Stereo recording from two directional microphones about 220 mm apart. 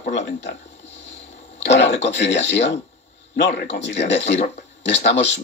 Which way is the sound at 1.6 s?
55° left (ahead or behind).